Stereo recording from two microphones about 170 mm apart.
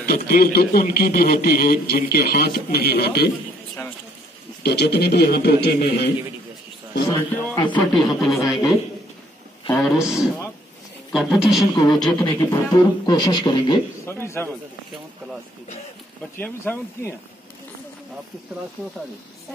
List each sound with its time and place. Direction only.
0.3 s speech: 65° left (ahead or behind)
4.6 s a man's voice: 75° left (ahead or behind)
7.1 s speech: 20° left (ahead or behind)
7.7 s speech: centre (ahead or behind)
9.7 s speech: 15° left (ahead or behind)
11.1 s speech: centre (ahead or behind)
11.7 s speech: 25° left (ahead or behind)
16.3 s speech: 10° left (ahead or behind)